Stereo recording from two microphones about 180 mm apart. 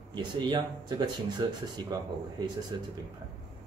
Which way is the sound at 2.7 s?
25° right (ahead or behind).